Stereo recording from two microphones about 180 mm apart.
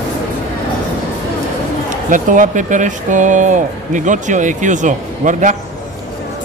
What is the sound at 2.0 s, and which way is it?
Speech, 45° right (ahead or behind).